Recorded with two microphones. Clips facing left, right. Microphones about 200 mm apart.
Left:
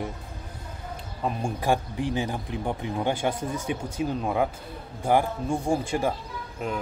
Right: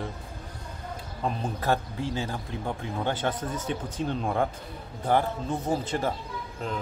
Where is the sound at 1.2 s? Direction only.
10° left (ahead or behind).